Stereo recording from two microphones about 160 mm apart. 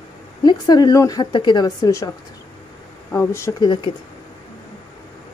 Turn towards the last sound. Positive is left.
turn(degrees=30)  # may be behind; listen again after turning